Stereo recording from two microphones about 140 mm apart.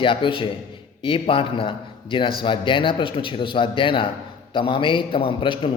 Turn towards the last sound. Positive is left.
turn(degrees=40)  # may be behind; listen again after turning